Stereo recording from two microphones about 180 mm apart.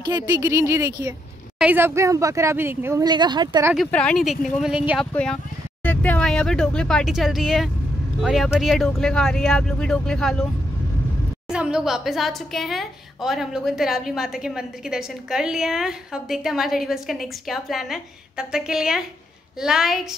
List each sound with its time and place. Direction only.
0.4 s speech: 15° right (ahead or behind)
3.7 s a woman's voice: 5° left (ahead or behind)
5.1 s a woman's voice: 5° left (ahead or behind)
11.5 s a woman's voice: 5° right (ahead or behind)